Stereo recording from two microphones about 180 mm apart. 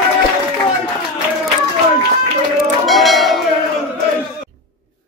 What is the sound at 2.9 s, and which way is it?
Bell, centre (ahead or behind).